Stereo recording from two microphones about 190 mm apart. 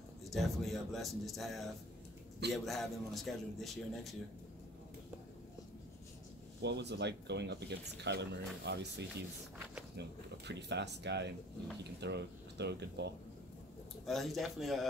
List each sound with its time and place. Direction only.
0.3 s a man's voice: centre (ahead or behind)
6.6 s speech: 65° right (ahead or behind)
14.0 s a man's voice: centre (ahead or behind)